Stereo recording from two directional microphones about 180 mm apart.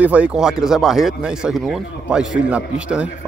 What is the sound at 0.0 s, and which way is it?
A man's voice, 5° right (ahead or behind).